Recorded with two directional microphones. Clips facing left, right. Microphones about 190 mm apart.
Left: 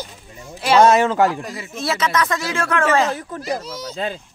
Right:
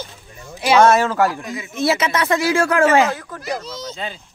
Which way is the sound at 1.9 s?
25° right (ahead or behind).